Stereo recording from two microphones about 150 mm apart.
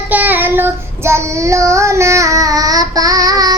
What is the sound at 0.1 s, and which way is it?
Child singing, 10° right (ahead or behind).